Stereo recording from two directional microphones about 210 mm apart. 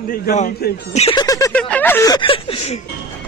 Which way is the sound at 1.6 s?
5° left (ahead or behind).